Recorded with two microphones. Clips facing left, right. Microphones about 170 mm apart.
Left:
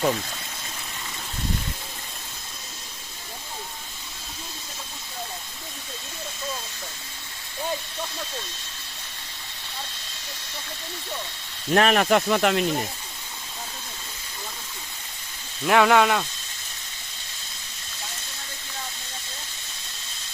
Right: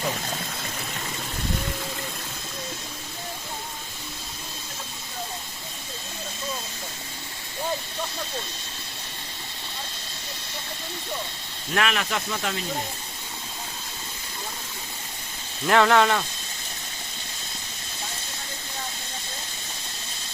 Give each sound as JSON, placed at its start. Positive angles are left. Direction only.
{"t": 11.7, "sound": "speech", "side_deg": 40}
{"t": 15.6, "sound": "speech", "side_deg": 10}